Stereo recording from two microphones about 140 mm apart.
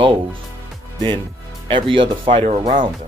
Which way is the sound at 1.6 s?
35° right (ahead or behind).